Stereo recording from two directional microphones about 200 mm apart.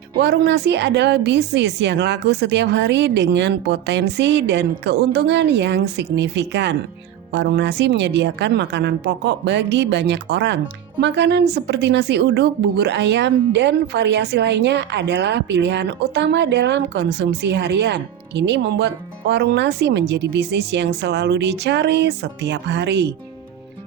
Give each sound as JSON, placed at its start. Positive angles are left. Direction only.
{"t": 0.2, "sound": "a woman's voice", "side_deg": -60}